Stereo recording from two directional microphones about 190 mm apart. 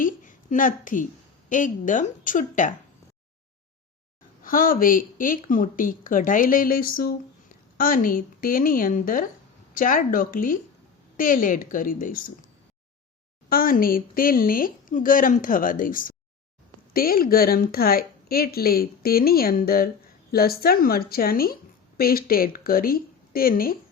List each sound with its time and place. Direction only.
0.0 s a sound: 45° left (ahead or behind)
1.5 s a woman's voice: 45° left (ahead or behind)
4.4 s a woman's voice: 45° left (ahead or behind)
13.5 s a woman's voice: 50° left (ahead or behind)